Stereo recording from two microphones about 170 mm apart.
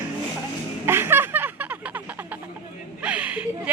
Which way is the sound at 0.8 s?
15° right (ahead or behind).